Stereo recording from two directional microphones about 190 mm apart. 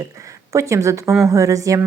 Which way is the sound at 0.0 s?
15° right (ahead or behind).